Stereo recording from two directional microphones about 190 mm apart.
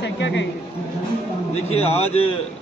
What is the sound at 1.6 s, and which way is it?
Speech, 35° left (ahead or behind).